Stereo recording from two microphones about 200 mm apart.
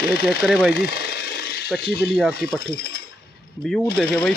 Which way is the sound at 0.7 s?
50° left (ahead or behind).